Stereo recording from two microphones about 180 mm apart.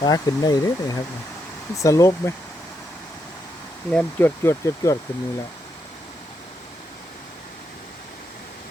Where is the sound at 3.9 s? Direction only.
10° left (ahead or behind).